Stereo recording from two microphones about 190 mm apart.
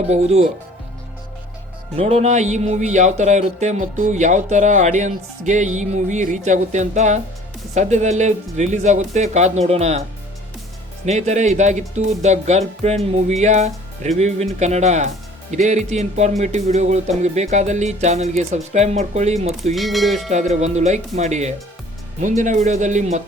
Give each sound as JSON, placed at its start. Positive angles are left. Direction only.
{"t": 0.1, "sound": "speech", "side_deg": -35}
{"t": 2.0, "sound": "speech", "side_deg": -35}
{"t": 11.0, "sound": "speech", "side_deg": -35}
{"t": 19.7, "sound": "a sound", "side_deg": 0}
{"t": 20.3, "sound": "speech", "side_deg": -35}